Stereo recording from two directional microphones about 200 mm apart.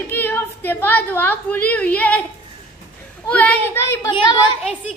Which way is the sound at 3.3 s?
5° left (ahead or behind).